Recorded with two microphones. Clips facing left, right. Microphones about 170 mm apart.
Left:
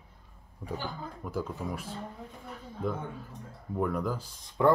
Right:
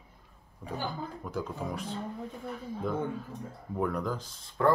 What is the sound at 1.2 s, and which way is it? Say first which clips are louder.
Speech: left 2 dB; 5° left (ahead or behind).